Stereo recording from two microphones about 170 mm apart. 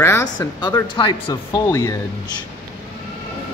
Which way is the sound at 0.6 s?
25° left (ahead or behind).